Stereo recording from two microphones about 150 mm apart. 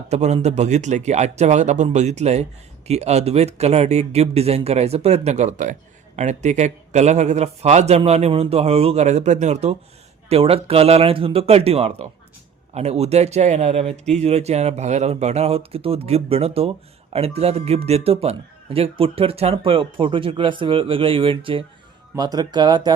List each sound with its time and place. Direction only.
0.1 s speech: 45° right (ahead or behind)
22.1 s speech: 25° right (ahead or behind)